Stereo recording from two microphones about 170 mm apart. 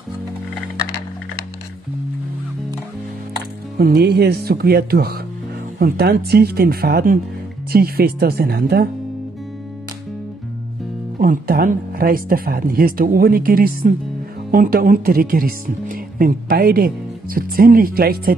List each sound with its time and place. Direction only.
3.7 s speech: 65° right (ahead or behind)
11.1 s speech: 60° right (ahead or behind)